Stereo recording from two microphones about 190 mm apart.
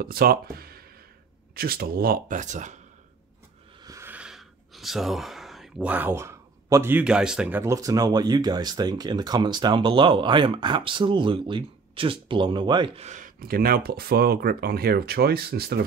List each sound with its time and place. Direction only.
0.0 s speech: 50° right (ahead or behind)
3.8 s speech: 15° right (ahead or behind); by 15.8 s 55° right (ahead or behind)